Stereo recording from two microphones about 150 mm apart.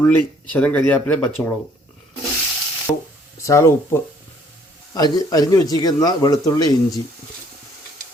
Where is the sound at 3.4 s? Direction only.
20° left (ahead or behind).